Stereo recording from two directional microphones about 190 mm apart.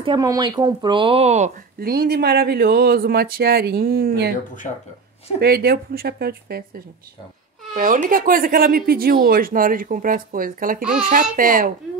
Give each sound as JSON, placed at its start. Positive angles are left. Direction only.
{"t": 0.0, "sound": "speech", "side_deg": -20}
{"t": 1.8, "sound": "speech", "side_deg": -50}
{"t": 5.4, "sound": "speech", "side_deg": -55}
{"t": 7.7, "sound": "speech", "side_deg": -40}